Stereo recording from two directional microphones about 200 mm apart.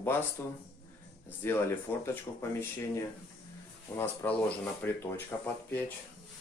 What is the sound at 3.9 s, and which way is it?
Speech, 10° left (ahead or behind).